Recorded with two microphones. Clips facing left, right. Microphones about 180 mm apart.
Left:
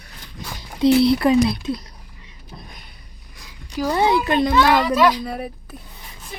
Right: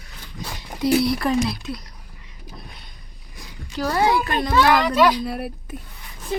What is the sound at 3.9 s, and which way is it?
Speech, 25° left (ahead or behind).